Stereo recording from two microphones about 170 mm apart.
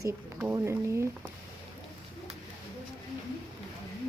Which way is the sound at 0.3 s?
15° right (ahead or behind).